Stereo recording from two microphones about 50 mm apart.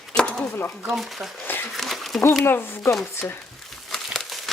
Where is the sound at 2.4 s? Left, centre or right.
Left.